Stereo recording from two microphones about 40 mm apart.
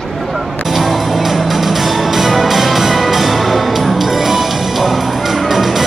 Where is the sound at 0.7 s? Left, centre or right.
Centre.